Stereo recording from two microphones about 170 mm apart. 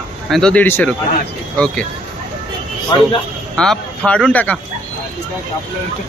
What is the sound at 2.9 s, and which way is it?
Speech, 25° left (ahead or behind).